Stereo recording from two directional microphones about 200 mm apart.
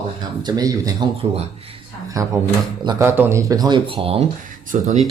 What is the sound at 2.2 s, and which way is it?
Speech, 15° right (ahead or behind).